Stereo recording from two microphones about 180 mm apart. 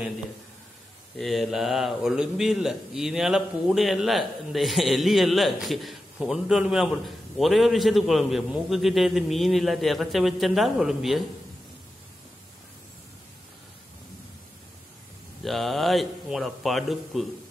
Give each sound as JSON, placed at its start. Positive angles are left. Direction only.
{"t": 1.1, "sound": "a man's voice", "side_deg": 0}
{"t": 15.4, "sound": "a man's voice", "side_deg": 0}